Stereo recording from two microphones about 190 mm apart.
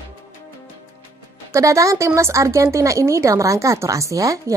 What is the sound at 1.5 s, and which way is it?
Speech, 15° right (ahead or behind).